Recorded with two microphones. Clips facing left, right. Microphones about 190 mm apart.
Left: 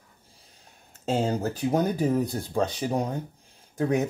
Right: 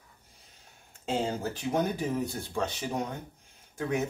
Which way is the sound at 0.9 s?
40° left (ahead or behind).